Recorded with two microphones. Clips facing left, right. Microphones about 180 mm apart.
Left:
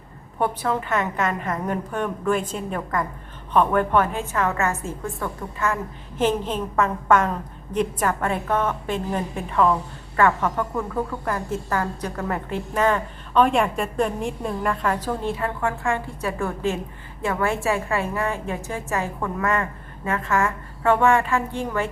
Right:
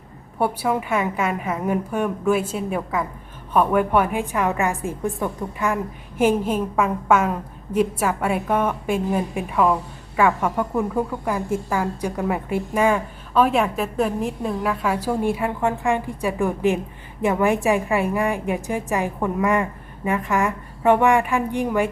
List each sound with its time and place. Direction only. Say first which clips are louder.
0.3 s a woman's voice: right 2 dB; 10° right (ahead or behind)